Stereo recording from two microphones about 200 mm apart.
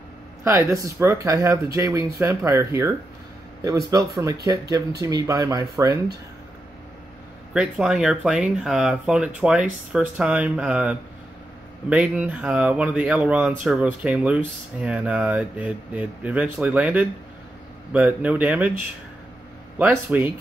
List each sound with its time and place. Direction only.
0.4 s speech: 15° right (ahead or behind)
7.5 s speech: 5° right (ahead or behind)
19.8 s speech: 10° right (ahead or behind)